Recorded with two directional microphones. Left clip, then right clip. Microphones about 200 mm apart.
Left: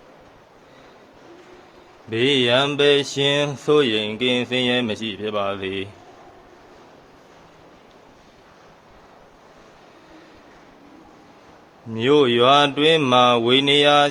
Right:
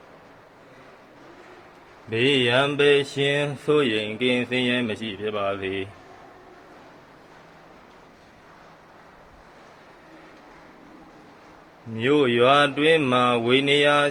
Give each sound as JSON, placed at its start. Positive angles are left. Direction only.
{"t": 2.0, "sound": "speech", "side_deg": 20}
{"t": 11.9, "sound": "speech", "side_deg": 25}